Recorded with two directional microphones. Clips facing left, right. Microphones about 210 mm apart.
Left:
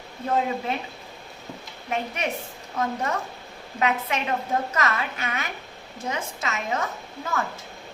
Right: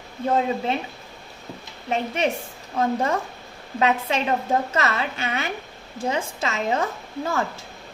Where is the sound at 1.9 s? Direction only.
25° right (ahead or behind).